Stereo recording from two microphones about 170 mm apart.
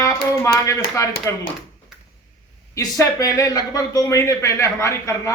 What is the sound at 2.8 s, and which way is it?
Speech, 20° left (ahead or behind).